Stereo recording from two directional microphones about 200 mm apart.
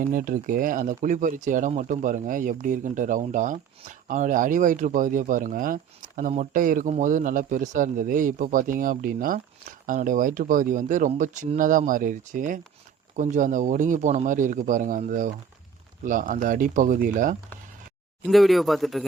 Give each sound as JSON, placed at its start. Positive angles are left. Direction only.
{"t": 0.0, "sound": "speech", "side_deg": -45}
{"t": 18.3, "sound": "speech", "side_deg": 0}